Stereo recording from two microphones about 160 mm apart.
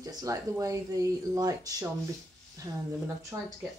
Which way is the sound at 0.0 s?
20° right (ahead or behind).